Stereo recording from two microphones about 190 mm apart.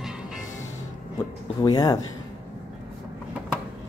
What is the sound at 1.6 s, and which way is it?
Speech, 20° left (ahead or behind).